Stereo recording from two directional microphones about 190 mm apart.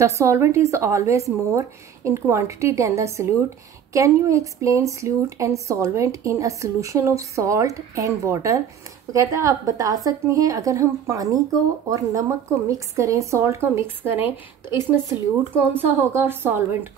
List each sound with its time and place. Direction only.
0.0 s a woman's voice: 15° right (ahead or behind)